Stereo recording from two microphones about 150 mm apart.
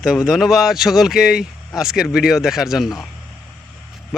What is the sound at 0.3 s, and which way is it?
Speech, centre (ahead or behind).